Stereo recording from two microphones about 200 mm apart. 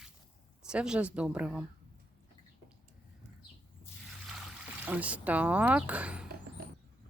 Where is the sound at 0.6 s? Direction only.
5° right (ahead or behind).